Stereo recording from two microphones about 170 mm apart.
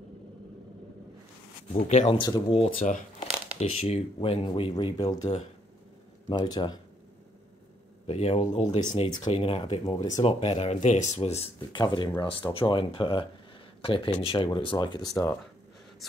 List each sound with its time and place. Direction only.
1.7 s speech: 45° left (ahead or behind)
2.1 s speech: 25° left (ahead or behind)
2.8 s speech: 50° left (ahead or behind); by 5.3 s 25° left (ahead or behind)
6.3 s speech: 25° left (ahead or behind)
8.1 s speech: 35° left (ahead or behind)
9.8 s speech: 20° left (ahead or behind)
10.2 s speech: 35° left (ahead or behind); by 15.3 s 20° left (ahead or behind)